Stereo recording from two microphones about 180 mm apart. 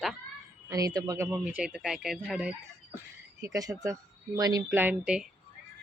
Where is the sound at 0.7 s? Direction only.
20° right (ahead or behind).